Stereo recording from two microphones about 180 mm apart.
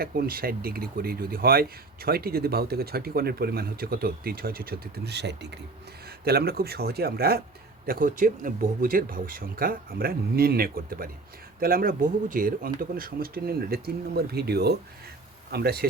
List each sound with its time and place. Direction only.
0.0 s speech: 55° right (ahead or behind)
6.2 s speech: 60° right (ahead or behind)